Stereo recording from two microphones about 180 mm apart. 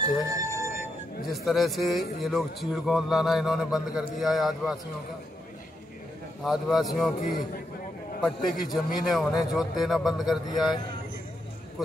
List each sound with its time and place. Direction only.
0.2 s speech: 20° right (ahead or behind)
1.3 s a man's voice: centre (ahead or behind)
6.4 s a man's voice: centre (ahead or behind)
8.5 s a man's voice: centre (ahead or behind)